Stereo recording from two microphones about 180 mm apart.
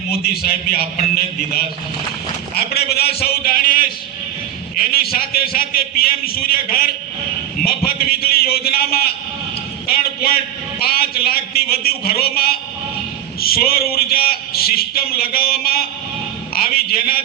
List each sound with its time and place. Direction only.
0.1 s a man's voice: 55° left (ahead or behind)
2.6 s a man's voice: 60° left (ahead or behind)